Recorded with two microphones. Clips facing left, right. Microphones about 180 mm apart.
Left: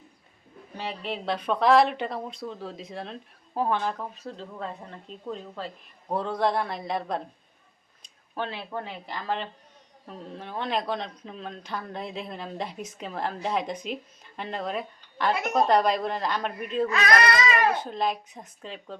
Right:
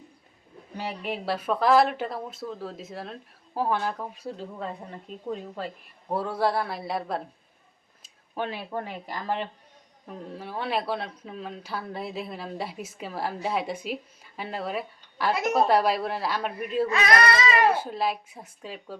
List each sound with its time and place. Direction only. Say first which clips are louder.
0.8 s speech: right 1 dB; 10° right (ahead or behind)
16.9 s speech: even; 25° right (ahead or behind)
17.7 s speech: even; 5° right (ahead or behind)